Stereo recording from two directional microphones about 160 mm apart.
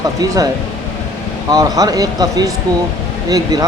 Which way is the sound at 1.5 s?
20° right (ahead or behind).